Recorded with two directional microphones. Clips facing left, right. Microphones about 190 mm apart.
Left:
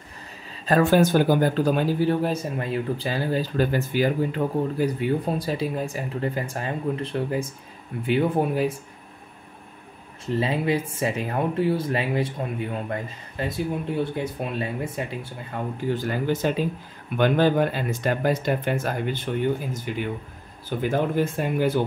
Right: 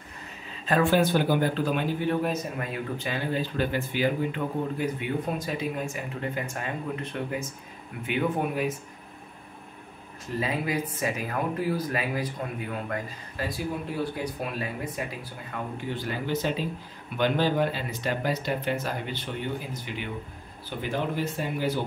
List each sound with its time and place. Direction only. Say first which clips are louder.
0.7 s speech: left 4 dB; 40° left (ahead or behind)
10.2 s speech: left 5 dB; 30° left (ahead or behind)
15.9 s speech: left 5 dB; 45° left (ahead or behind)